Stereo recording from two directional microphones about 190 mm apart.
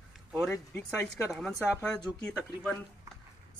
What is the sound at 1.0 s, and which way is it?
Speech, centre (ahead or behind).